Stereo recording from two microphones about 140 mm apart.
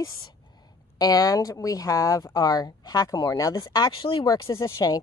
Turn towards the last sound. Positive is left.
turn(degrees=20)  # may be behind; listen again after turning